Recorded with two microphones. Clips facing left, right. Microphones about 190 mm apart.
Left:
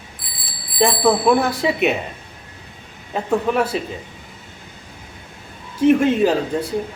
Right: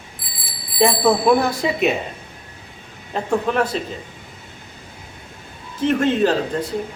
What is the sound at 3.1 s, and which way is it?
Speech, 5° left (ahead or behind).